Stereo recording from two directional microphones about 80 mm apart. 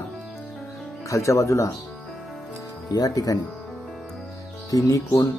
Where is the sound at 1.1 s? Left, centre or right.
Left.